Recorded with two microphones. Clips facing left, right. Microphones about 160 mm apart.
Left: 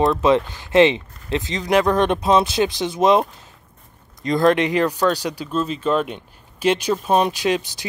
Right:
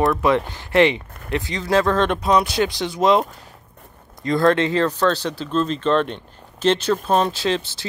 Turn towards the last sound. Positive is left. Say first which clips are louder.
# left 1 dB
turn(degrees=15)  # may be behind; listen again after turning